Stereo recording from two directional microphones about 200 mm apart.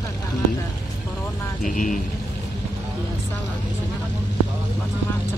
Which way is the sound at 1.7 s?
40° left (ahead or behind).